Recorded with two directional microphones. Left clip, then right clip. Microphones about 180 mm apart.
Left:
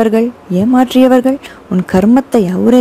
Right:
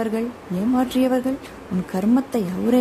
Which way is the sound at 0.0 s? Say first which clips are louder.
Left 13 dB; 40° left (ahead or behind).